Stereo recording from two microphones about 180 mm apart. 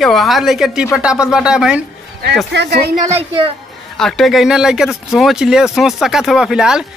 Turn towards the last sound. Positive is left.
turn(degrees=-5)  # may be behind; listen again after turning